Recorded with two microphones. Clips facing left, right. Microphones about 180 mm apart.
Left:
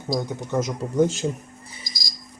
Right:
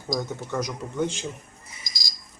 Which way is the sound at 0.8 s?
40° left (ahead or behind).